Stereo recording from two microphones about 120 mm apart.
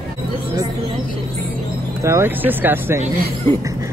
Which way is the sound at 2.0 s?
20° right (ahead or behind).